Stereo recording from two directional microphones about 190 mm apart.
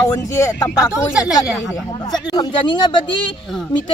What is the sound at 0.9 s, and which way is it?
Speech, 5° right (ahead or behind).